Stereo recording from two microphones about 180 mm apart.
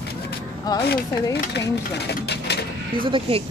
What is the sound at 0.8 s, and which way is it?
Speech, 70° left (ahead or behind).